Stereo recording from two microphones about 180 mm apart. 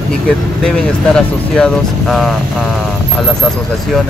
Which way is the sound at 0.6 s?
5° left (ahead or behind).